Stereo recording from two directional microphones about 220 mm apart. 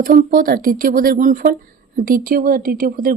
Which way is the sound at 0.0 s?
40° right (ahead or behind).